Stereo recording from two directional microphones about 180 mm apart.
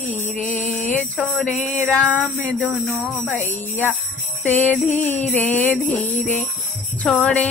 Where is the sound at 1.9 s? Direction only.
10° left (ahead or behind).